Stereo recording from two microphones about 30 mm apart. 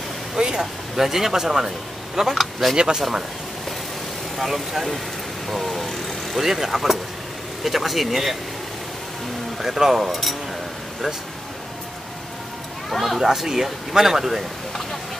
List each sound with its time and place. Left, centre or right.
0.4 s speech: centre
2.1 s speech: centre
2.7 s speech: right
3.0 s speech: centre
4.4 s speech: centre
6.3 s speech: centre
9.6 s speech: centre
13.2 s speech: centre